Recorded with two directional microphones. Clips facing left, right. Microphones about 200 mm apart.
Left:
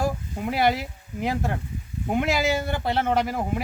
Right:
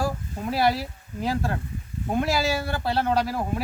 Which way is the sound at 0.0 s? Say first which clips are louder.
Left 1 dB; 15° left (ahead or behind).